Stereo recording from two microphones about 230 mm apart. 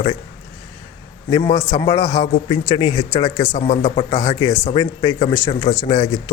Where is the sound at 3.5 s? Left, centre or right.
Left.